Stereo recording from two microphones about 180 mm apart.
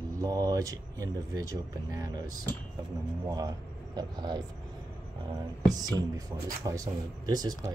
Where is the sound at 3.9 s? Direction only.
20° right (ahead or behind).